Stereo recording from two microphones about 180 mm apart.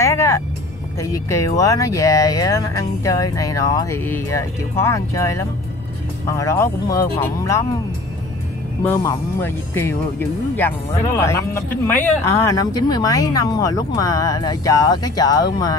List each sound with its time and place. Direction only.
0.0 s music: 15° left (ahead or behind)
0.9 s speech: 20° left (ahead or behind)
8.8 s speech: 15° left (ahead or behind)